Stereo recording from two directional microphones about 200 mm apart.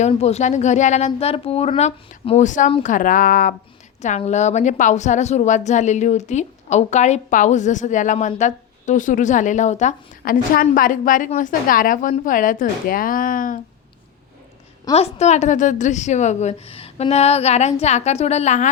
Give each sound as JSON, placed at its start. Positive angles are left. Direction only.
{"t": 0.0, "sound": "a woman's voice", "side_deg": 30}
{"t": 14.9, "sound": "a woman's voice", "side_deg": 35}